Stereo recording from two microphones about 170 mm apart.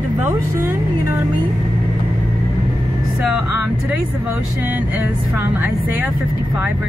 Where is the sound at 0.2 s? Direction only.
15° right (ahead or behind).